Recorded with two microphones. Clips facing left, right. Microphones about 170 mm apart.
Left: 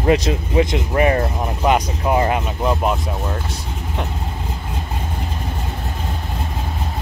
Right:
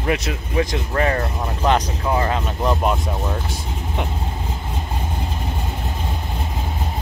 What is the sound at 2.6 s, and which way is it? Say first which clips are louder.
Speech: left 1 dB; centre (ahead or behind).